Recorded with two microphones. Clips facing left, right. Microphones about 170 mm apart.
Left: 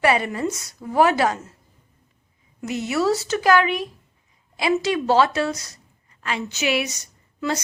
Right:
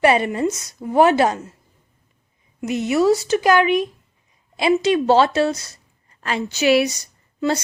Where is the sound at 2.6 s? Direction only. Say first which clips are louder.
Right 5 dB; 20° right (ahead or behind).